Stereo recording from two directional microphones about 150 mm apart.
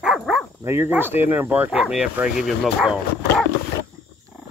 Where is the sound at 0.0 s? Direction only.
Centre (ahead or behind).